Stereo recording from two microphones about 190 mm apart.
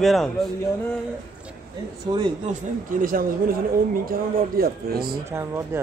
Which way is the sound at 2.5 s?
45° right (ahead or behind).